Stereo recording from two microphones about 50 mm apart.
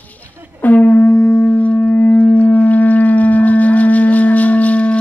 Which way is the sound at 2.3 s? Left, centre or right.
Left.